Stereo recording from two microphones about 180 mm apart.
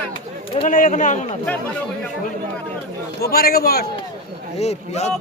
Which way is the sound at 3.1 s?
60° left (ahead or behind).